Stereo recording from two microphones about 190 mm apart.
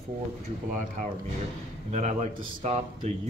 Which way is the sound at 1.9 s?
40° right (ahead or behind).